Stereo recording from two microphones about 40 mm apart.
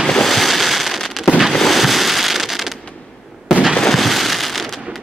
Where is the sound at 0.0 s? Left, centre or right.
Centre.